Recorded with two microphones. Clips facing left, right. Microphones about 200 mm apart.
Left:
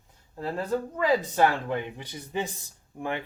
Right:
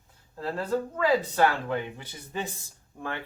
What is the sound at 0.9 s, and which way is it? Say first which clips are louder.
Speech: even; 20° left (ahead or behind).